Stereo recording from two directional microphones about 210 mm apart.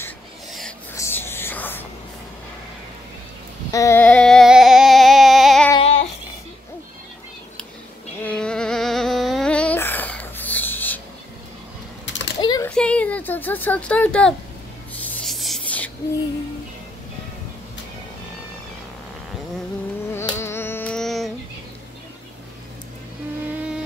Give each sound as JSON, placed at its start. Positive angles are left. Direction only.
{"t": 0.9, "sound": "whispering", "side_deg": 10}
{"t": 3.7, "sound": "music", "side_deg": 15}
{"t": 5.7, "sound": "child singing", "side_deg": 30}
{"t": 8.2, "sound": "a sound", "side_deg": 5}
{"t": 12.1, "sound": "typing", "side_deg": 60}
{"t": 12.4, "sound": "a sound", "side_deg": 20}
{"t": 12.6, "sound": "a sound", "side_deg": 5}
{"t": 15.0, "sound": "rub", "side_deg": 5}
{"t": 20.1, "sound": "insect", "side_deg": 10}